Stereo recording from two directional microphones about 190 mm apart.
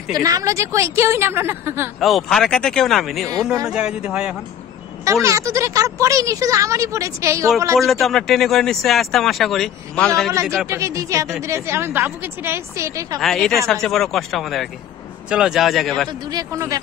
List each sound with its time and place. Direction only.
0.1 s speech: 20° right (ahead or behind)
2.0 s speech: centre (ahead or behind)
5.0 s speech: 15° right (ahead or behind)
7.8 s speech: centre (ahead or behind)
10.7 s speech: 15° right (ahead or behind)
13.2 s speech: centre (ahead or behind)
16.1 s speech: 20° right (ahead or behind)